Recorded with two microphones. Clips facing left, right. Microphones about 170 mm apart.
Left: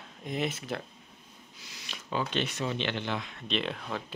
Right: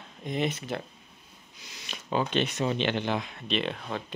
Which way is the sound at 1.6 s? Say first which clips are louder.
Right 3 dB; 20° right (ahead or behind).